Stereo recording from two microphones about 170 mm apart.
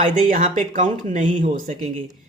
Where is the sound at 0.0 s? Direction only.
40° right (ahead or behind).